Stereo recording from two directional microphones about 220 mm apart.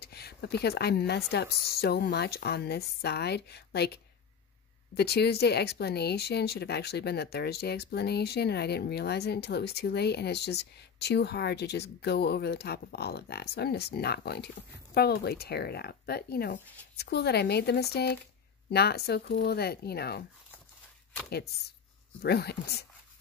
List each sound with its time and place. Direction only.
0.0 s speech: 45° left (ahead or behind)
22.2 s speech: 45° left (ahead or behind)